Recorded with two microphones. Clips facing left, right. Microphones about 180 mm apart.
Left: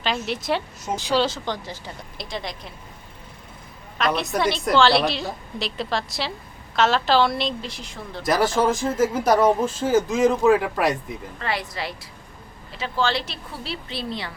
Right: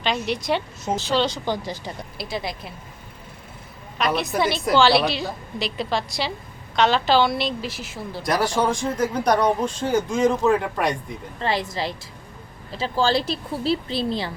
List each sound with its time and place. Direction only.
0.0 s speech: centre (ahead or behind)
1.5 s speech: 10° right (ahead or behind)
3.9 s speech: centre (ahead or behind)
11.3 s a woman's voice: 25° right (ahead or behind)